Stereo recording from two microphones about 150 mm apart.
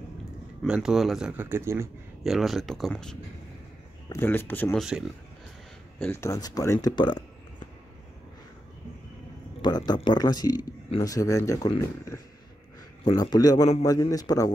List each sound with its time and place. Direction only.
0.7 s speech: 5° right (ahead or behind)
2.2 s speech: centre (ahead or behind)
4.1 s speech: 15° left (ahead or behind)
4.7 s speech: 5° right (ahead or behind)
5.9 s speech: 15° left (ahead or behind); by 7.2 s 30° left (ahead or behind)
9.6 s speech: 30° left (ahead or behind)
13.0 s speech: 25° left (ahead or behind)